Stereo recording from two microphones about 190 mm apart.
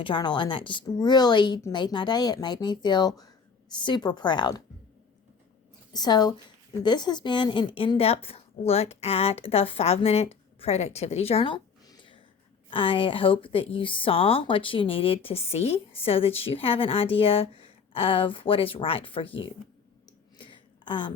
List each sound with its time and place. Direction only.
0.0 s speech: 25° left (ahead or behind)
5.9 s a woman's voice: 20° left (ahead or behind)
20.1 s clicking: 25° left (ahead or behind)